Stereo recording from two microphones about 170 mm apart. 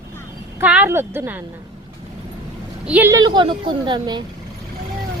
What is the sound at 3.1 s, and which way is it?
Speech, 25° right (ahead or behind).